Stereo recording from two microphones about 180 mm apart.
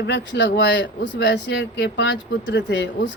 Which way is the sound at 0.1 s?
70° left (ahead or behind).